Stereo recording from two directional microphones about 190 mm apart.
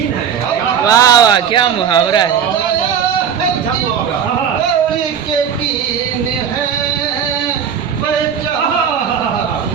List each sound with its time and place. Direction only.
0.9 s speech: 20° left (ahead or behind)